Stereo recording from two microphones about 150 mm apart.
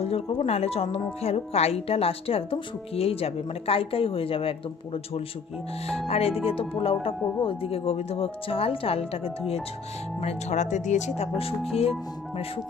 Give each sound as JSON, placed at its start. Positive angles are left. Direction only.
{"t": 0.0, "sound": "speech", "side_deg": 40}
{"t": 11.3, "sound": "speech", "side_deg": 40}